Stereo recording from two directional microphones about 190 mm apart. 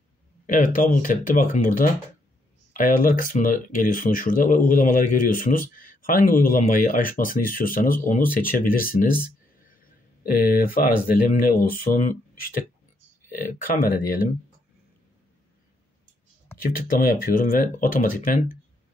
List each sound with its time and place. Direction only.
0.5 s speech: 45° left (ahead or behind)
10.4 s speech: 50° left (ahead or behind)
16.7 s speech: 50° left (ahead or behind)